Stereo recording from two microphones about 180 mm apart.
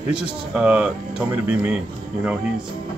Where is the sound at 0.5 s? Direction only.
5° right (ahead or behind).